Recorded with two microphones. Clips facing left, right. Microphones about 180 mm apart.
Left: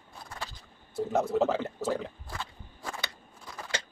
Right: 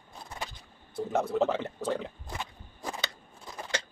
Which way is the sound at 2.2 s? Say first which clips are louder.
Right 1 dB; 20° right (ahead or behind).